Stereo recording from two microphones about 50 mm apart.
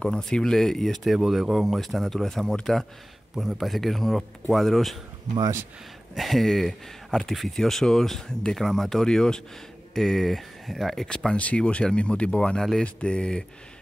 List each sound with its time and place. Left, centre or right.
0.3 s speech: centre
1.1 s a man's voice: centre
6.1 s a man's voice: centre
11.3 s speech: left